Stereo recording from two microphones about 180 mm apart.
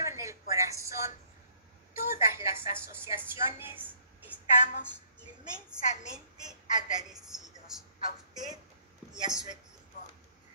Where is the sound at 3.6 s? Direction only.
10° right (ahead or behind).